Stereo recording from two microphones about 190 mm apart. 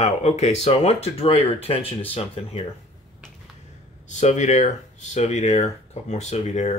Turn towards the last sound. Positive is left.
turn(degrees=35)  # may be behind; listen again after turning